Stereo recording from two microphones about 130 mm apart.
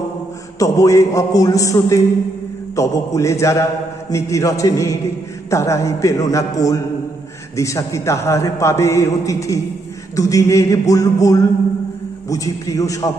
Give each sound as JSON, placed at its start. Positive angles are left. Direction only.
{"t": 0.6, "sound": "a man's voice", "side_deg": 25}